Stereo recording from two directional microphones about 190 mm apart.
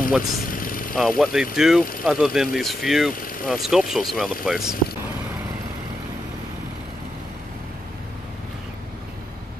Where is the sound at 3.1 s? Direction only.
45° left (ahead or behind).